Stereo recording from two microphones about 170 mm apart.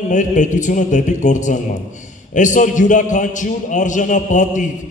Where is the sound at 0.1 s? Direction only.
50° left (ahead or behind).